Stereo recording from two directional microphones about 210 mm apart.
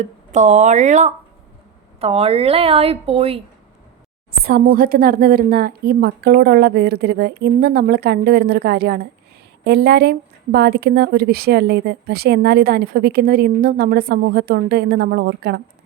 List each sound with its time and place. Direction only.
0.0 s speech: 35° right (ahead or behind)
4.3 s a woman's voice: 45° right (ahead or behind)